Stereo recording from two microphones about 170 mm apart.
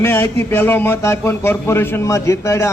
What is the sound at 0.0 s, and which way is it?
A man's voice, 15° left (ahead or behind).